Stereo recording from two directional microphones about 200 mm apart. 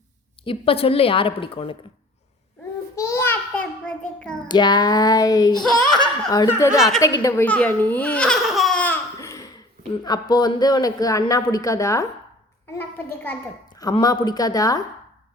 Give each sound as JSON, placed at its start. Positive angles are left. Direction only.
{"t": 0.4, "sound": "speech", "side_deg": 25}
{"t": 2.9, "sound": "a sound", "side_deg": 15}
{"t": 4.4, "sound": "speech", "side_deg": 20}
{"t": 6.0, "sound": "belly laugh", "side_deg": 20}
{"t": 6.7, "sound": "a woman's voice", "side_deg": 0}
{"t": 7.2, "sound": "baby laughter", "side_deg": 15}
{"t": 10.0, "sound": "a woman's voice", "side_deg": 20}